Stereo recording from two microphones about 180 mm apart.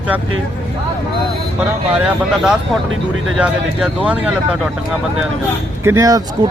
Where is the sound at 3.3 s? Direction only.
5° right (ahead or behind).